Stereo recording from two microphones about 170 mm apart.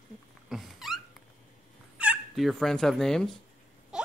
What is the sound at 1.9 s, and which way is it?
Turkey, 5° right (ahead or behind).